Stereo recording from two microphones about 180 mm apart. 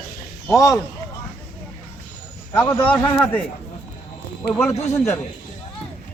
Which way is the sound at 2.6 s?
25° left (ahead or behind).